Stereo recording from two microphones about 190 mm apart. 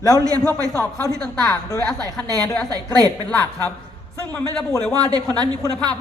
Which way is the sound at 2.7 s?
20° right (ahead or behind).